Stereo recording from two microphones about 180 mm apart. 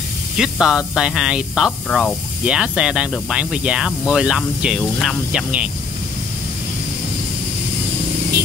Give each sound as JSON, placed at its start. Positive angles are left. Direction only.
{"t": 0.4, "sound": "speech", "side_deg": -5}